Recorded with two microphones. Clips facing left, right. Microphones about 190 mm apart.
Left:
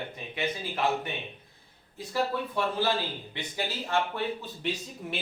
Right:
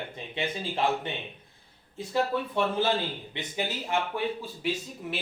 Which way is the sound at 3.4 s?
20° right (ahead or behind).